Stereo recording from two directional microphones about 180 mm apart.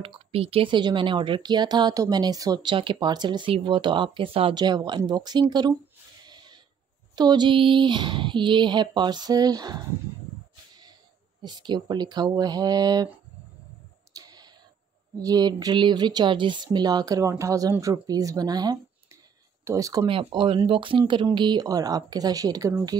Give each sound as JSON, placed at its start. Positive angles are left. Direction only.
{"t": 0.0, "sound": "speech", "side_deg": -30}
{"t": 6.2, "sound": "a sound", "side_deg": -25}
{"t": 7.2, "sound": "speech", "side_deg": -25}
{"t": 11.4, "sound": "speech", "side_deg": -25}
{"t": 14.1, "sound": "clicking", "side_deg": -20}
{"t": 15.1, "sound": "speech", "side_deg": -20}
{"t": 20.1, "sound": "speech", "side_deg": -30}